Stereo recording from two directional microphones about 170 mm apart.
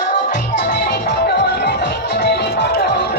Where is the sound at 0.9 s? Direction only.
75° left (ahead or behind).